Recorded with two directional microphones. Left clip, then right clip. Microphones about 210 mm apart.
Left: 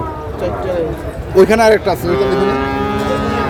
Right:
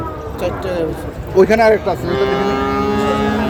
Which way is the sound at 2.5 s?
50° right (ahead or behind).